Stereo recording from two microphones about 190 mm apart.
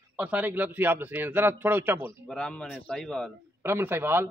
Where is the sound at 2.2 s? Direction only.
5° left (ahead or behind).